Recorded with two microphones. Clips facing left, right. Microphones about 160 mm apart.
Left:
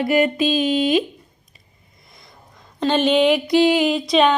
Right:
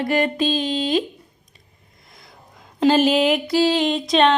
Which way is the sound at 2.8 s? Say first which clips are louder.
Right 1 dB; 5° right (ahead or behind).